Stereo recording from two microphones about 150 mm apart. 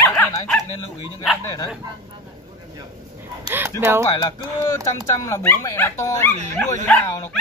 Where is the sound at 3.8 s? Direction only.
15° right (ahead or behind).